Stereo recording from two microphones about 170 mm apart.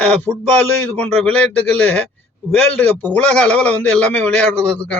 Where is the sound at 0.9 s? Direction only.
10° left (ahead or behind).